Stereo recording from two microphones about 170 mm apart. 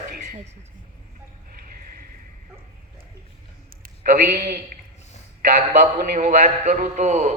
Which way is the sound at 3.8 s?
60° right (ahead or behind).